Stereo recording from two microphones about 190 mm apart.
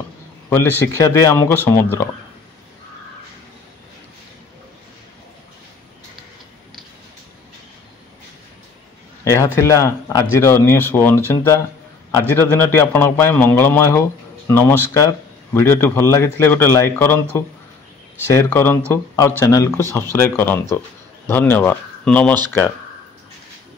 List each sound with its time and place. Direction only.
0.5 s speech: 10° left (ahead or behind)
9.2 s a man's voice: 15° left (ahead or behind)